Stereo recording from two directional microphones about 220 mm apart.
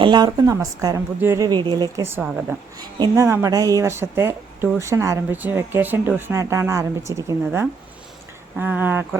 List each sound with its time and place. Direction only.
0.0 s speech: 20° right (ahead or behind)